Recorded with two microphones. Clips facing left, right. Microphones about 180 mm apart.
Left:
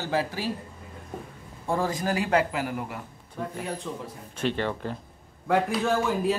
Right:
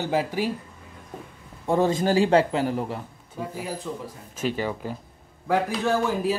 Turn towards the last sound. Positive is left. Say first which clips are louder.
# right 1 dB
turn(degrees=0)  # may be behind; listen again after turning